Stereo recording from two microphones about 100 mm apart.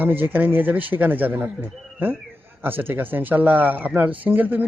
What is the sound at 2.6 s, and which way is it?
Speech, 20° right (ahead or behind).